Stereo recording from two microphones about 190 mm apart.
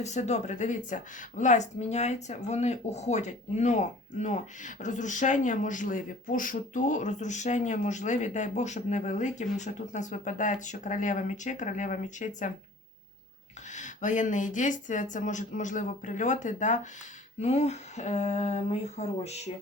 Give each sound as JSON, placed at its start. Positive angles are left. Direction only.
{"t": 0.0, "sound": "speech", "side_deg": 35}
{"t": 13.7, "sound": "speech", "side_deg": 40}